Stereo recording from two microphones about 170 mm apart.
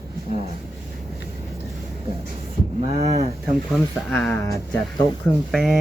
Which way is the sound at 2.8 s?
40° right (ahead or behind).